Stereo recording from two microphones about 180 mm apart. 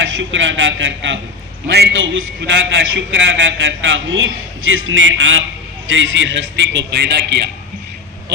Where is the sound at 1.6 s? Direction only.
75° right (ahead or behind).